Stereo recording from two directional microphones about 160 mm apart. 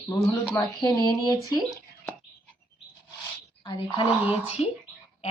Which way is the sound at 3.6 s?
30° left (ahead or behind).